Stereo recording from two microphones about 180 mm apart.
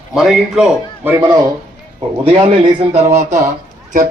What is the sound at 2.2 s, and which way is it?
Speech, 30° right (ahead or behind).